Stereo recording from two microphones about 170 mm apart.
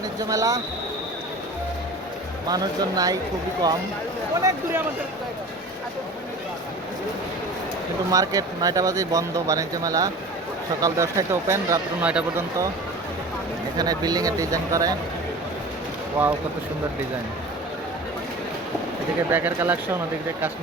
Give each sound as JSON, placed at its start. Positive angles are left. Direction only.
{"t": 0.2, "sound": "speech", "side_deg": -20}
{"t": 2.5, "sound": "speech", "side_deg": -20}
{"t": 4.4, "sound": "speech", "side_deg": -20}
{"t": 8.1, "sound": "speech", "side_deg": -20}
{"t": 13.7, "sound": "speech", "side_deg": -25}
{"t": 16.2, "sound": "speech", "side_deg": -10}
{"t": 19.3, "sound": "speech", "side_deg": -10}